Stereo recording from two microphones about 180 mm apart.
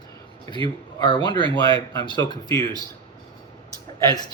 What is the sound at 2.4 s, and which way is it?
Speech, 25° right (ahead or behind).